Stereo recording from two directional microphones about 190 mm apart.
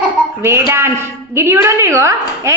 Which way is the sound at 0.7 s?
15° right (ahead or behind).